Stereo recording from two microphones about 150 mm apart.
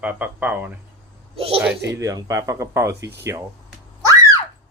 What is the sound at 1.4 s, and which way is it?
Speech, 40° right (ahead or behind).